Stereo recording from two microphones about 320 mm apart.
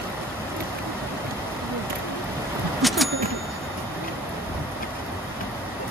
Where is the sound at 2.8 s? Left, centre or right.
Centre.